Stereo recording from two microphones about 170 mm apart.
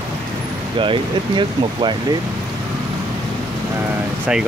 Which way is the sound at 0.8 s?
30° right (ahead or behind).